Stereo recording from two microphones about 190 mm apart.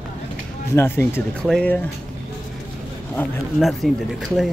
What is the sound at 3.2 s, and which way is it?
Speech, 10° left (ahead or behind).